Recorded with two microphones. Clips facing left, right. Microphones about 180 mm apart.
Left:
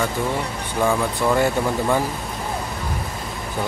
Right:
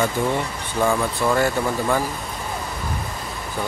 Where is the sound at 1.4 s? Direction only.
15° left (ahead or behind).